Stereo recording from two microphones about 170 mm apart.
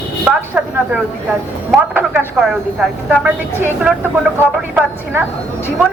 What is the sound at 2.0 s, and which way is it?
A woman's voice, 5° right (ahead or behind).